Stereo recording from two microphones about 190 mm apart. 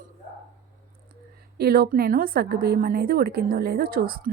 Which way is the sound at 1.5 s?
55° right (ahead or behind).